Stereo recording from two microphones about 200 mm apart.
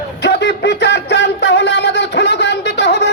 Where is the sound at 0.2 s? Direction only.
60° left (ahead or behind).